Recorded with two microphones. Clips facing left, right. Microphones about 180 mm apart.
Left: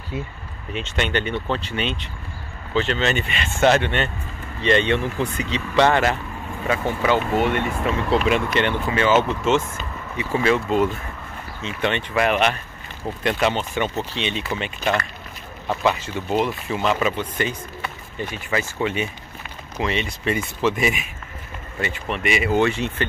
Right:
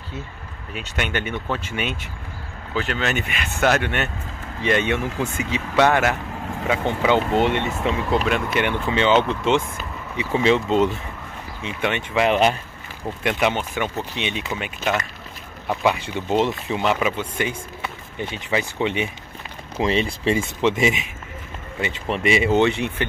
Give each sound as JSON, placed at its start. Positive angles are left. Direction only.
{"t": 0.7, "sound": "speech", "side_deg": -10}
{"t": 6.7, "sound": "speech", "side_deg": -15}
{"t": 8.1, "sound": "speech", "side_deg": 0}
{"t": 8.8, "sound": "speech", "side_deg": -20}
{"t": 9.1, "sound": "speech", "side_deg": 10}
{"t": 9.4, "sound": "speech", "side_deg": -15}
{"t": 12.3, "sound": "speech", "side_deg": -30}
{"t": 13.2, "sound": "speech", "side_deg": -15}
{"t": 19.8, "sound": "speech", "side_deg": -30}
{"t": 22.0, "sound": "speech", "side_deg": -30}